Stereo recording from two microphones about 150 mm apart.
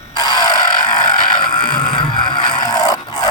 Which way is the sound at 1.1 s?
30° left (ahead or behind).